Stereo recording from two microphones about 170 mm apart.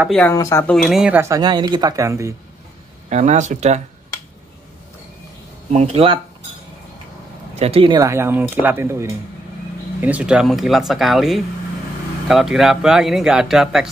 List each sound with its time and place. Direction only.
0.3 s speech: 15° left (ahead or behind)
0.7 s speech: centre (ahead or behind)
1.2 s speech: 20° right (ahead or behind)
3.1 s speech: 45° right (ahead or behind)
5.7 s speech: 40° right (ahead or behind)
7.5 s speech: 35° right (ahead or behind)
8.0 s speech: 15° right (ahead or behind)